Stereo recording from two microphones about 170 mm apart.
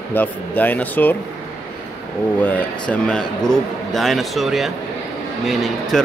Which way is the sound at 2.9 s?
5° left (ahead or behind).